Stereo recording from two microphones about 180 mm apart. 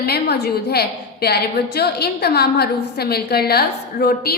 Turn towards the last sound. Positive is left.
turn(degrees=60)  # may be behind; listen again after turning